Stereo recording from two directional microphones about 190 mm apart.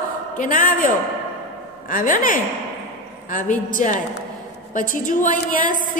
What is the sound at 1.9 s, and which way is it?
A woman's voice, 45° left (ahead or behind).